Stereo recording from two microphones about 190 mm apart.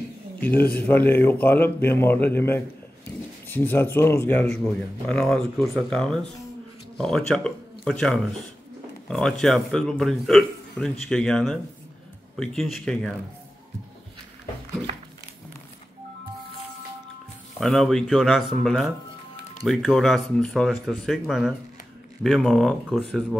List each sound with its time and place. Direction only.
0.4 s a man's voice: 10° left (ahead or behind)
14.9 s a sound: 30° right (ahead or behind)
17.6 s a man's voice: centre (ahead or behind)